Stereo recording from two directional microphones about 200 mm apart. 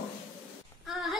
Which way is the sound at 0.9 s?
Centre (ahead or behind).